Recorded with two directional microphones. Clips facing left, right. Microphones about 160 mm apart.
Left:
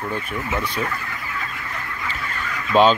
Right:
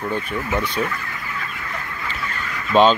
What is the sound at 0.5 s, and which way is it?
Speech, 5° left (ahead or behind).